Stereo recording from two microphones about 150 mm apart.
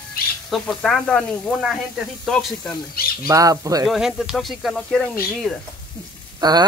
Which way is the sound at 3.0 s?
85° left.